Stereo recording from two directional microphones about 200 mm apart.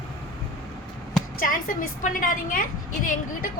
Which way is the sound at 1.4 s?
45° left (ahead or behind).